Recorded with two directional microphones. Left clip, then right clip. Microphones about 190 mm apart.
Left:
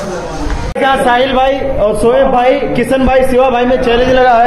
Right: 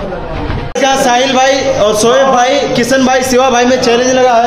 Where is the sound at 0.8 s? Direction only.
20° right (ahead or behind).